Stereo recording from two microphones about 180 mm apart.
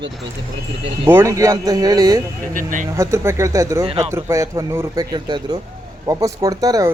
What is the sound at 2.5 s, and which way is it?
Speech, 50° right (ahead or behind).